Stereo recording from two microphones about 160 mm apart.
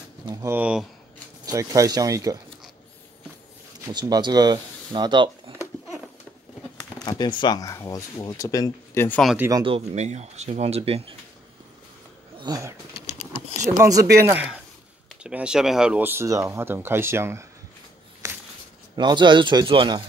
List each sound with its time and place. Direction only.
0.3 s speech: 20° right (ahead or behind)
0.6 s speech: 5° right (ahead or behind)
1.4 s speech: 20° right (ahead or behind)
3.8 s speech: 25° right (ahead or behind)
7.1 s speech: 30° left (ahead or behind)
9.6 s speech: 35° right (ahead or behind)
12.4 s speech: 25° right (ahead or behind)
13.7 s speech: 20° right (ahead or behind)
14.1 s speech: 10° right (ahead or behind)
18.2 s a sound: 20° right (ahead or behind)
18.9 s speech: 30° right (ahead or behind)